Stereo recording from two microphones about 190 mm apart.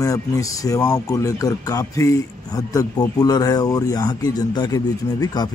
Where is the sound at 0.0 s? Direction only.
15° left (ahead or behind).